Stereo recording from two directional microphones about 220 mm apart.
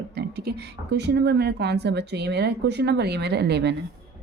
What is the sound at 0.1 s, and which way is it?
A woman's voice, 45° right (ahead or behind).